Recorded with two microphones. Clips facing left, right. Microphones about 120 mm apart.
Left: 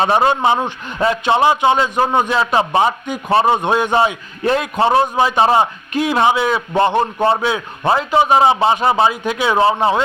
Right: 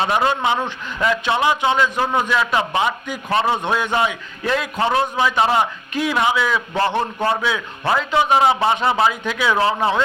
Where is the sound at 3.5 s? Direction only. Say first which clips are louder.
Left 5 dB; 20° left (ahead or behind).